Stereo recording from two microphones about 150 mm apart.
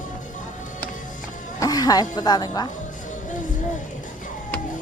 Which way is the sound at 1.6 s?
25° left (ahead or behind).